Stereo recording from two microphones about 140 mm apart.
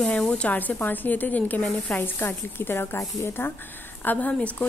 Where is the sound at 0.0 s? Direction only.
5° left (ahead or behind).